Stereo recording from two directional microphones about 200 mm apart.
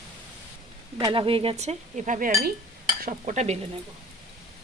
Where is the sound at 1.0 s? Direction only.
25° right (ahead or behind); by 2.5 s 45° right (ahead or behind).